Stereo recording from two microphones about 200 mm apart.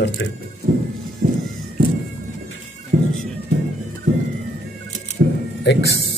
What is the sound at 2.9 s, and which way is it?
Music, 50° right (ahead or behind).